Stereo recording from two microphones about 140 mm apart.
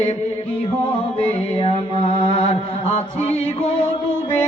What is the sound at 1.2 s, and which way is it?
Mantra, 45° left (ahead or behind).